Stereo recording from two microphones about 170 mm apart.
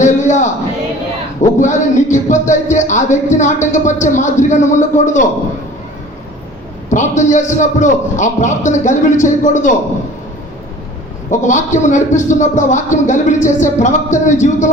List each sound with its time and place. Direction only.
0.0 s music: 45° left (ahead or behind)
6.9 s speech: 45° left (ahead or behind)
11.3 s speech: 45° left (ahead or behind)